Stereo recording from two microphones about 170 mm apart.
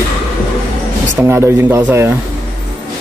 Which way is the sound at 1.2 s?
15° right (ahead or behind).